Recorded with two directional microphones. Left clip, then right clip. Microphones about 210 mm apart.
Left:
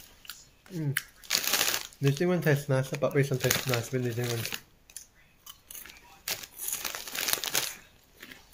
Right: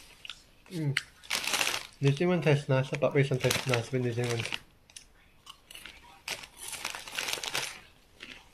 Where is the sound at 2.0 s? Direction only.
10° left (ahead or behind).